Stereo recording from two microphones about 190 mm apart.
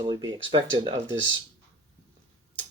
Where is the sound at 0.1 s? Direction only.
20° right (ahead or behind).